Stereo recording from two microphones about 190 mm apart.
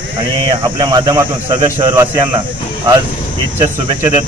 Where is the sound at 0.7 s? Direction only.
20° right (ahead or behind).